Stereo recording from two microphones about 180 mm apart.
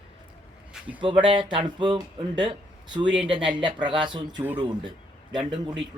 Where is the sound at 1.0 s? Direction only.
30° right (ahead or behind).